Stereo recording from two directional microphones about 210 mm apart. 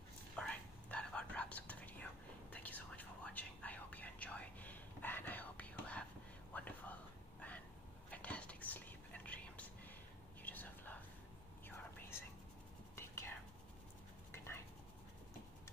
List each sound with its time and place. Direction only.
0.4 s whispering: 5° left (ahead or behind)
14.3 s whispering: 10° left (ahead or behind)